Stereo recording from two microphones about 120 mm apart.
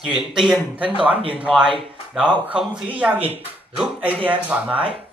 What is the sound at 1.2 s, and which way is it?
Speech, 50° right (ahead or behind).